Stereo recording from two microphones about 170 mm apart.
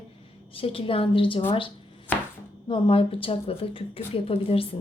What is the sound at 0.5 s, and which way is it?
A woman's voice, 35° left (ahead or behind).